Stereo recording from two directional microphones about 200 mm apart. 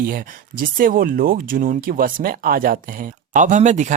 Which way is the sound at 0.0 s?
45° right (ahead or behind).